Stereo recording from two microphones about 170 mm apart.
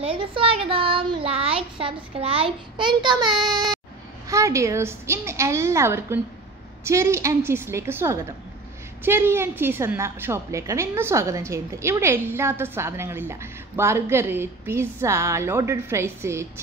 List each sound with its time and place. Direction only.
0.0 s a child's voice: 30° right (ahead or behind); by 16.4 s 15° right (ahead or behind)